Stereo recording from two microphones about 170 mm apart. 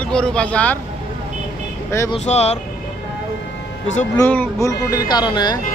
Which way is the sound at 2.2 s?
40° left (ahead or behind).